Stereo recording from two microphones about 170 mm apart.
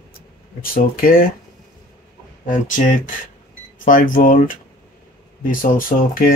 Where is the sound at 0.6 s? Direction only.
60° left (ahead or behind).